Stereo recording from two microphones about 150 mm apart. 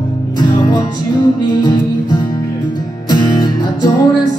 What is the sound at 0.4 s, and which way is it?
Music, 25° left (ahead or behind).